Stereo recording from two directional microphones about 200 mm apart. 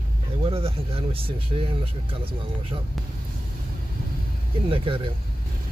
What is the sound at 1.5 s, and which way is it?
Speech, 25° right (ahead or behind).